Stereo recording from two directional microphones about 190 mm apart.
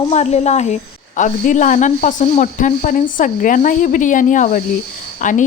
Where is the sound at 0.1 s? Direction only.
35° left (ahead or behind).